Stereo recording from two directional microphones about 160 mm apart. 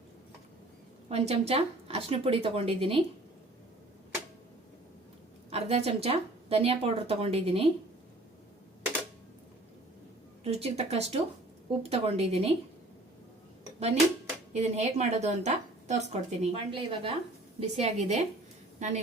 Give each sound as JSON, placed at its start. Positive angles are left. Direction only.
{"t": 1.1, "sound": "speech", "side_deg": -40}
{"t": 5.5, "sound": "speech", "side_deg": -40}
{"t": 10.4, "sound": "speech", "side_deg": -40}
{"t": 13.7, "sound": "a woman's voice", "side_deg": -40}